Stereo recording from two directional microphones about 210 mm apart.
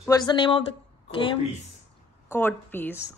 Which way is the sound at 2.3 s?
10° left (ahead or behind).